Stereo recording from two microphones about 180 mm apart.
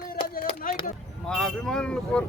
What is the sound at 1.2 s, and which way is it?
Vehicle, 5° left (ahead or behind).